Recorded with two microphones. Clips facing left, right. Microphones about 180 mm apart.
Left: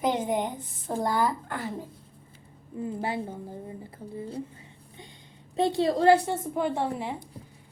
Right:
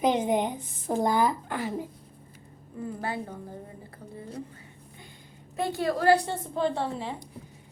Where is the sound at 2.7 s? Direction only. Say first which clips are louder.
Left 2 dB; 20° left (ahead or behind).